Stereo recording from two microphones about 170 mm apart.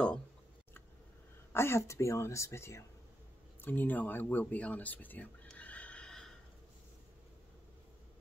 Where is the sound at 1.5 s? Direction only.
15° left (ahead or behind).